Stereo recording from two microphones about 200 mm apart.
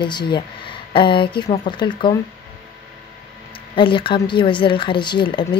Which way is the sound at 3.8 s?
25° left (ahead or behind).